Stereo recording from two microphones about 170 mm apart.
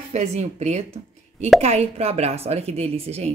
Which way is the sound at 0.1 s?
40° right (ahead or behind).